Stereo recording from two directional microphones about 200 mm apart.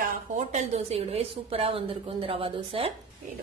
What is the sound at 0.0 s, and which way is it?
A woman's voice, 40° right (ahead or behind).